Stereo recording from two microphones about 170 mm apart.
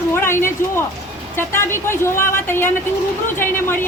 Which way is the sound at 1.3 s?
15° left (ahead or behind).